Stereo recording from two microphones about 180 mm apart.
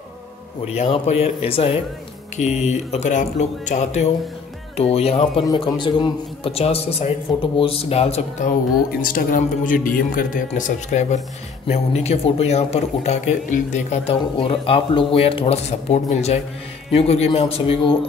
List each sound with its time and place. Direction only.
0.7 s speech: 30° left (ahead or behind)
9.0 s a man's voice: 50° left (ahead or behind); by 17.9 s 30° left (ahead or behind)